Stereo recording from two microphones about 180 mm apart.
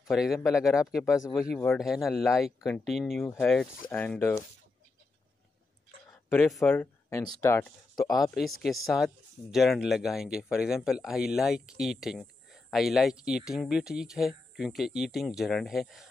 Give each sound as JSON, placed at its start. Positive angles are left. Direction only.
{"t": 0.0, "sound": "speech", "side_deg": 0}
{"t": 1.2, "sound": "speech", "side_deg": 15}
{"t": 1.8, "sound": "speech", "side_deg": 0}
{"t": 3.9, "sound": "speech", "side_deg": 10}
{"t": 6.5, "sound": "speech", "side_deg": 5}
{"t": 8.2, "sound": "speech", "side_deg": 0}